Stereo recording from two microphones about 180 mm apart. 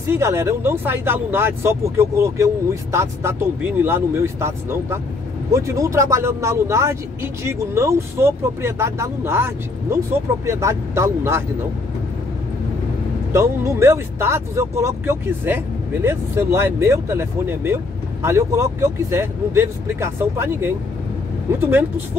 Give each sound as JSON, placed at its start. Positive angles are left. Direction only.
{"t": 0.0, "sound": "speech", "side_deg": -15}
{"t": 13.3, "sound": "speech", "side_deg": -15}